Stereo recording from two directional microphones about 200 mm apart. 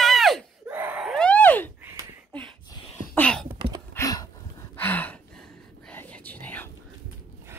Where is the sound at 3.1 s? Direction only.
5° left (ahead or behind).